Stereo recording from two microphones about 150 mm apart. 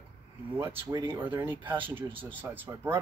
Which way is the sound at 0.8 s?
30° right (ahead or behind).